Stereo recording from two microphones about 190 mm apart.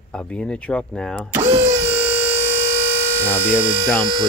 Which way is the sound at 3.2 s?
10° right (ahead or behind).